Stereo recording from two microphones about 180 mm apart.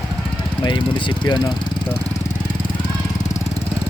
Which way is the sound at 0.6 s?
25° left (ahead or behind).